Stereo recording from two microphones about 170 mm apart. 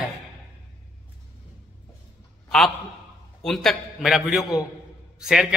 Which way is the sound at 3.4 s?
Centre (ahead or behind).